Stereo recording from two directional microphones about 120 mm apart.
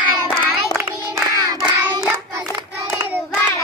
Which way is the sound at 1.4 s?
40° right (ahead or behind).